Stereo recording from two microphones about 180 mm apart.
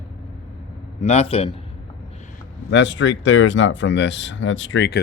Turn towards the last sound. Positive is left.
turn(degrees=75)  # may be behind; listen again after turning